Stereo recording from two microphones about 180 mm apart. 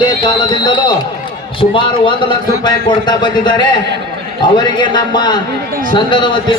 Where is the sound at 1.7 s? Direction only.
25° left (ahead or behind).